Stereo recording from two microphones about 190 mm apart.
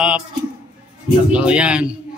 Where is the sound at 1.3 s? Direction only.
5° right (ahead or behind).